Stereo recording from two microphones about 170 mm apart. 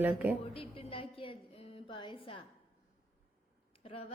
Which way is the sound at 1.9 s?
30° left (ahead or behind).